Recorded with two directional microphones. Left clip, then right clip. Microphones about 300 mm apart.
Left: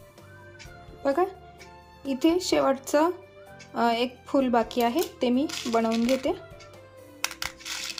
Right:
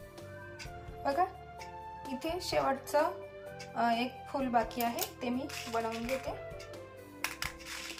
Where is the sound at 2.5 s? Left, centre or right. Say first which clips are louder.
Left 7 dB; centre.